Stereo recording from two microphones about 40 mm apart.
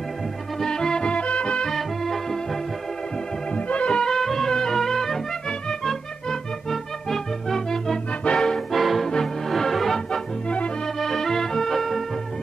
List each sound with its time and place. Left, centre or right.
0.6 s music: centre
1.1 s music: left
1.7 s music: centre
3.5 s music: left
4.1 s music: centre